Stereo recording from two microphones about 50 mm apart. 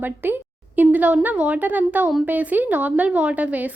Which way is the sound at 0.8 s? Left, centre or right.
Right.